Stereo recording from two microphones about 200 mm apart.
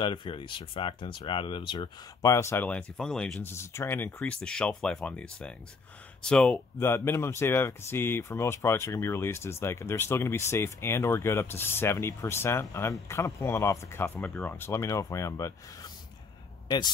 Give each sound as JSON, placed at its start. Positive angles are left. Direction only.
{"t": 0.0, "sound": "a man's voice", "side_deg": 25}